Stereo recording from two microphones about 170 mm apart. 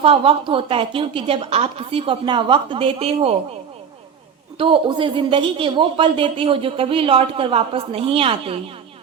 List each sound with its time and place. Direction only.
0.0 s a woman's voice: 35° right (ahead or behind)
4.5 s a woman's voice: 30° right (ahead or behind)